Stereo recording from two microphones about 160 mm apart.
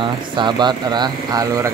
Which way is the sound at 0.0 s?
30° right (ahead or behind).